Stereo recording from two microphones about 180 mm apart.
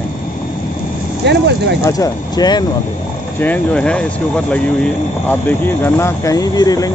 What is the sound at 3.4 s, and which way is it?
Speech, 10° left (ahead or behind).